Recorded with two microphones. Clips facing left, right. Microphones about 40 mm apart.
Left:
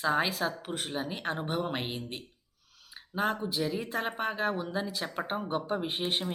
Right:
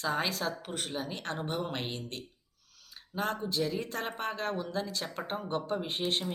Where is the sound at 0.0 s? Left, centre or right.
Centre.